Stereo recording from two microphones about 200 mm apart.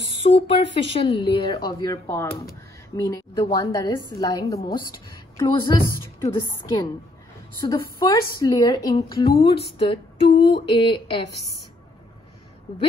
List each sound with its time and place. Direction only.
0.2 s a woman's voice: 30° left (ahead or behind)